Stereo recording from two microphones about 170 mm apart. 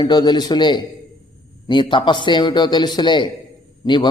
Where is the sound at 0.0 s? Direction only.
25° left (ahead or behind).